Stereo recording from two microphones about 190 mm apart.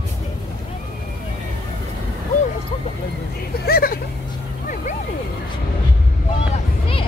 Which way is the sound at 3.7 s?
55° left (ahead or behind).